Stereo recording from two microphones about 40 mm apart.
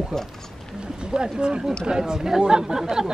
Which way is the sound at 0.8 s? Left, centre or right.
Right.